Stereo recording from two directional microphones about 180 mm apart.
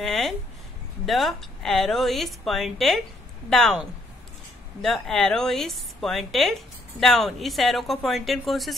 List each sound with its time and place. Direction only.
0.0 s speech: centre (ahead or behind)
4.8 s speech: centre (ahead or behind)